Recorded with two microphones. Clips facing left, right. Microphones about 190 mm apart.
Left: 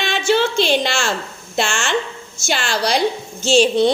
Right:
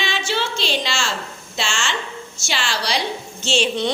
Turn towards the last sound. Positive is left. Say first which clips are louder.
# left 7 dB
turn(degrees=35)  # may be behind; listen again after turning